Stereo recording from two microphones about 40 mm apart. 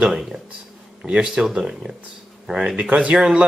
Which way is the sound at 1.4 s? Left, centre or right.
Right.